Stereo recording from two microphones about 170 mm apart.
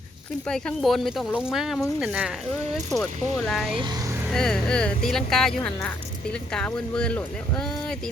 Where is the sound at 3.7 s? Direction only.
25° right (ahead or behind).